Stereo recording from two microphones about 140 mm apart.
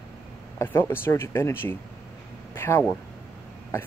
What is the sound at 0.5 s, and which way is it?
Speech, 15° left (ahead or behind).